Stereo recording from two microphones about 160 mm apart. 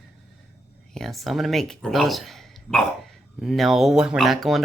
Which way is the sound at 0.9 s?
Centre (ahead or behind).